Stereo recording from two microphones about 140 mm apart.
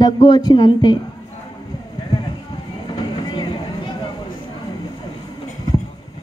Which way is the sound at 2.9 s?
30° left (ahead or behind).